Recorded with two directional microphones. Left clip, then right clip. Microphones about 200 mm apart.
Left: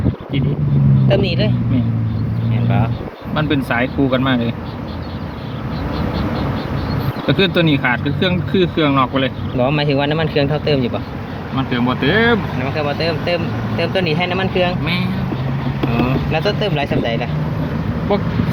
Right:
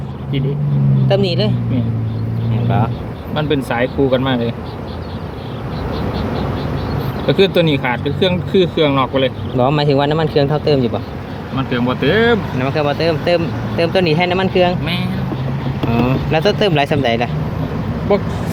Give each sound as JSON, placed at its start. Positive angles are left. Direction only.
{"t": 1.0, "sound": "speech", "side_deg": -30}
{"t": 3.3, "sound": "speech", "side_deg": -5}
{"t": 7.3, "sound": "speech", "side_deg": -5}
{"t": 9.6, "sound": "speech", "side_deg": -25}
{"t": 12.6, "sound": "speech", "side_deg": -60}
{"t": 16.0, "sound": "speech", "side_deg": -65}